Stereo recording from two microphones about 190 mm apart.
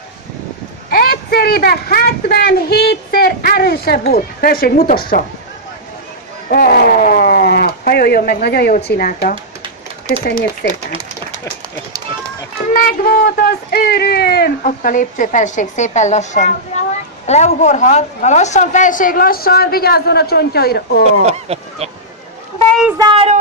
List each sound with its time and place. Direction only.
0.8 s speech: 55° left (ahead or behind)
6.5 s speech: 50° left (ahead or behind)
12.6 s speech: 45° left (ahead or behind)
21.1 s speech: 35° right (ahead or behind)
22.7 s a sound: centre (ahead or behind)
22.9 s a sound: 25° right (ahead or behind)